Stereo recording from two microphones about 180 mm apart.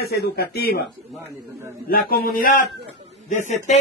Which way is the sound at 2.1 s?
55° left (ahead or behind).